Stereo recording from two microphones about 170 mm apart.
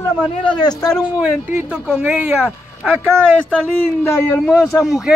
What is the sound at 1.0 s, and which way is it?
A man's voice, 5° right (ahead or behind).